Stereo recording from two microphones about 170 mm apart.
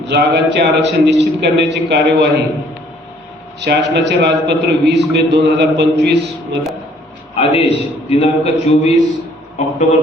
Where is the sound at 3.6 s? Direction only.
90° right.